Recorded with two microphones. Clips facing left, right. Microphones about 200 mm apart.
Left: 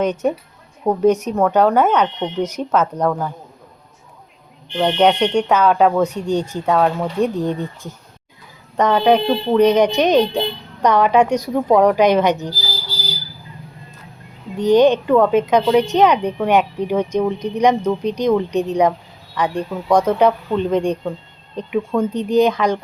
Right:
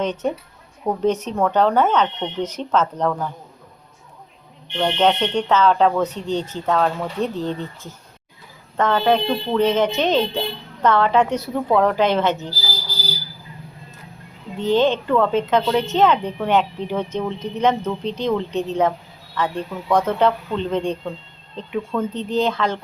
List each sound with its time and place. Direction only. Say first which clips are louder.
0.0 s speech: left 4 dB; 10° left (ahead or behind)
4.8 s speech: left 4 dB; 15° left (ahead or behind)
14.6 s speech: left 5 dB; 15° left (ahead or behind)